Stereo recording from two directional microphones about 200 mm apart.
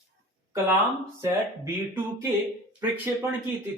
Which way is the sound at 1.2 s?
15° right (ahead or behind).